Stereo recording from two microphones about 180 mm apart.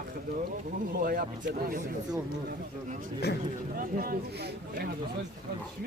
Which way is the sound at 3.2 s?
65° left (ahead or behind).